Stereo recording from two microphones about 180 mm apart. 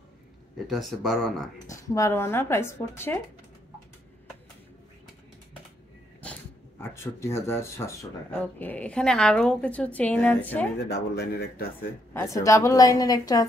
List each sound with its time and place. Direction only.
0.7 s speech: centre (ahead or behind)
1.7 s a woman's voice: 20° left (ahead or behind)
6.8 s a woman's voice: 15° left (ahead or behind)
10.9 s speech: 65° left (ahead or behind)
12.1 s a woman's voice: 15° left (ahead or behind)